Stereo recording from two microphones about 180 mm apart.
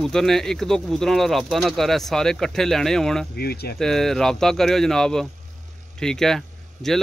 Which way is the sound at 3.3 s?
60° left (ahead or behind).